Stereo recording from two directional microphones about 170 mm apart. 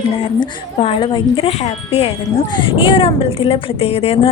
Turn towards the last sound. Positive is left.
turn(degrees=35)  # may be behind; listen again after turning